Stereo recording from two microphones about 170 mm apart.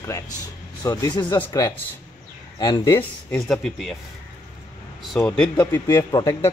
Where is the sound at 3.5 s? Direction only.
Centre (ahead or behind).